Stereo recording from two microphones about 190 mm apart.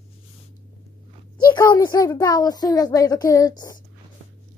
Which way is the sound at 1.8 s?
20° left (ahead or behind).